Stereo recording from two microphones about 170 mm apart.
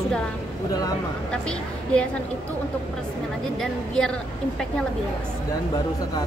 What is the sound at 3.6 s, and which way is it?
Speech, 5° left (ahead or behind).